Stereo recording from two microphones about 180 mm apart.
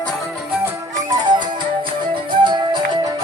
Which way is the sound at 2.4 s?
25° right (ahead or behind).